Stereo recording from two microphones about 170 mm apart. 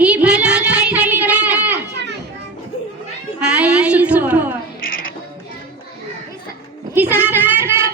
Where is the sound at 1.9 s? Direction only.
80° right.